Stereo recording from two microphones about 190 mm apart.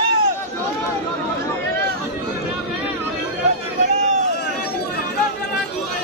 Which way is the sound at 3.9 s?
35° right (ahead or behind).